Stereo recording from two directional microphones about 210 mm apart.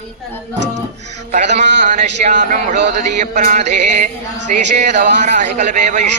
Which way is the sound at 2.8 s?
55° right (ahead or behind).